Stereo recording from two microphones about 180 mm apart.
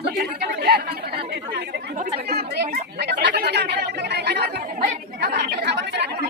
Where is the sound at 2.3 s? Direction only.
60° right (ahead or behind).